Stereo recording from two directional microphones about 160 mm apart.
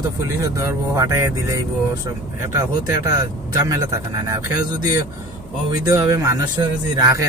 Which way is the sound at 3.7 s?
20° right (ahead or behind).